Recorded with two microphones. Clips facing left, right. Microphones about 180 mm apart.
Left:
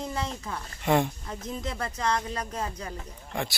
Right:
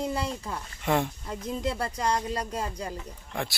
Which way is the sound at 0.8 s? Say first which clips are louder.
Left 2 dB; centre (ahead or behind).